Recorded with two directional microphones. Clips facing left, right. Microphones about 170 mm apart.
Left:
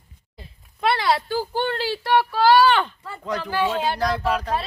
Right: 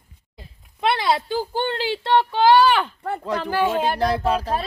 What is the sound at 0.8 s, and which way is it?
Speech, 20° right (ahead or behind).